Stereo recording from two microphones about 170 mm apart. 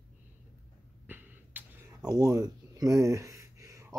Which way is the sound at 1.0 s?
10° right (ahead or behind).